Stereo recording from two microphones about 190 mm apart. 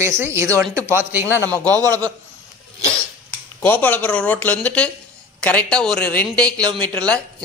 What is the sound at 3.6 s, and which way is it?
Speech, 10° left (ahead or behind).